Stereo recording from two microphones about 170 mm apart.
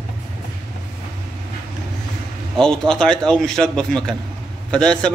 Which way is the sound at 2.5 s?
5° left (ahead or behind).